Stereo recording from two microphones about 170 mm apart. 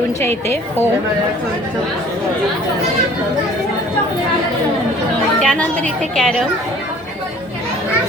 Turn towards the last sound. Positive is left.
turn(degrees=0)  # may be behind; listen again after turning